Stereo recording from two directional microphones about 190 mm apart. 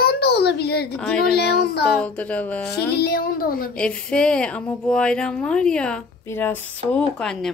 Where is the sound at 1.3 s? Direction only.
60° left (ahead or behind).